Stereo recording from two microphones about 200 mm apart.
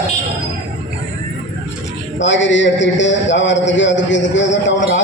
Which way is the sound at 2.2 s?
65° left (ahead or behind).